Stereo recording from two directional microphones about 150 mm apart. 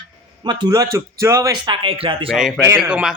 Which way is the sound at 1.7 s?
35° right (ahead or behind).